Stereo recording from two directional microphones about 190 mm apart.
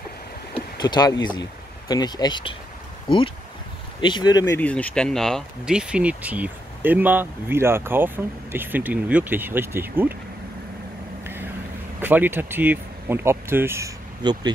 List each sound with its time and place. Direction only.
0.6 s boat: 20° left (ahead or behind)
1.3 s speech: 20° left (ahead or behind)
4.0 s speech: 25° left (ahead or behind)
4.6 s speech: 10° left (ahead or behind); by 10.1 s 10° right (ahead or behind)
12.0 s speech: 10° right (ahead or behind)